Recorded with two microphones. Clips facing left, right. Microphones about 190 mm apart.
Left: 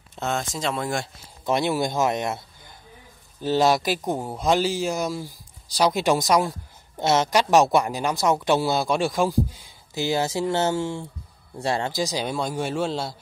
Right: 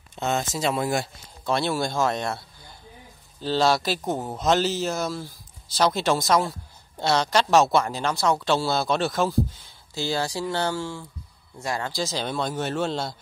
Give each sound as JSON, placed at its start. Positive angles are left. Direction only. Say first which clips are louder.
{"t": 0.1, "sound": "speech", "louder": "right 1 dB", "side_deg": 0}
{"t": 1.4, "sound": "speech", "louder": "left 2 dB", "side_deg": 15}